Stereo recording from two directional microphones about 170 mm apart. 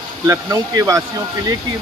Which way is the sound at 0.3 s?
20° right (ahead or behind).